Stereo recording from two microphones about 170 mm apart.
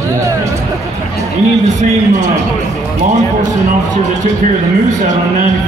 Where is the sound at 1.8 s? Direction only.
45° right (ahead or behind).